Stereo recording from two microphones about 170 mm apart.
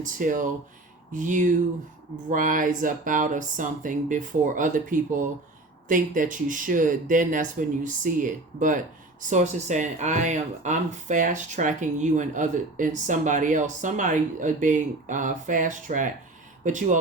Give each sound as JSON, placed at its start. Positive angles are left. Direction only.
{"t": 0.0, "sound": "speech", "side_deg": -50}